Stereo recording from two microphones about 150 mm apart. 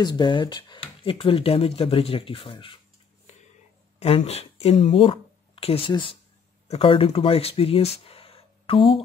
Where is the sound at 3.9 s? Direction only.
45° left (ahead or behind).